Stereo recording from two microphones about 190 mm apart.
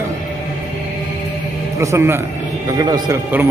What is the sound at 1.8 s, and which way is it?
A man's voice, 10° right (ahead or behind).